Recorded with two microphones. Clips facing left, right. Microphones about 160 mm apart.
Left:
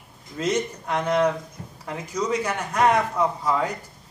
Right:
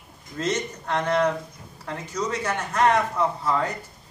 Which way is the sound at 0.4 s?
10° left (ahead or behind).